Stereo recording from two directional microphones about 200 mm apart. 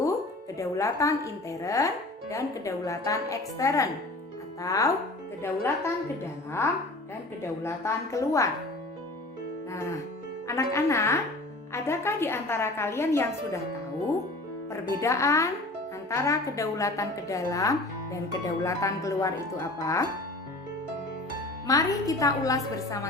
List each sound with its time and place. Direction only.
0.6 s a woman's voice: 15° left (ahead or behind)
7.6 s a woman's voice: 15° left (ahead or behind)
10.4 s a woman's voice: 15° left (ahead or behind)
14.7 s a woman's voice: 15° left (ahead or behind)
21.7 s a woman's voice: 15° left (ahead or behind)